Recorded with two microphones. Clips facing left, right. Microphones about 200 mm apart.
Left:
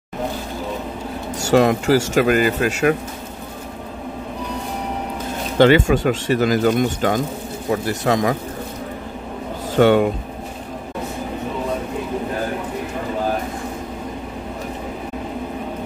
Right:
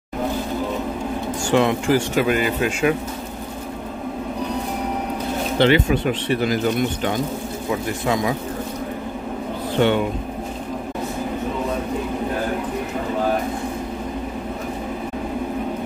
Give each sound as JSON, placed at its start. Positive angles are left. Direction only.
{"t": 1.5, "sound": "speech", "side_deg": 40}
{"t": 5.6, "sound": "speech", "side_deg": 45}
{"t": 9.8, "sound": "speech", "side_deg": 45}